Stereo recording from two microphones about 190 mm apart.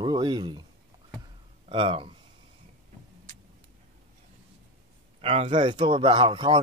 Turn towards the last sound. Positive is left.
turn(degrees=-25)  # may be behind; listen again after turning